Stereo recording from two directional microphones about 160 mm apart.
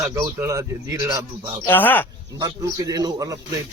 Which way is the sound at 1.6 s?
10° left (ahead or behind).